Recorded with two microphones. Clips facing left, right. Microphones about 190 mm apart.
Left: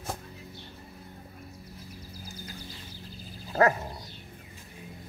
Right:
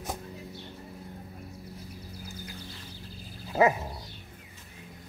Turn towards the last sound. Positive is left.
turn(degrees=-5)  # may be behind; listen again after turning